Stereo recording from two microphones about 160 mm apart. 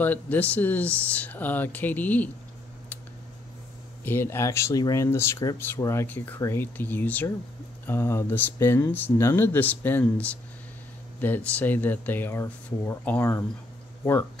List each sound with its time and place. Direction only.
0.0 s speech: 10° left (ahead or behind)
4.0 s speech: 15° left (ahead or behind)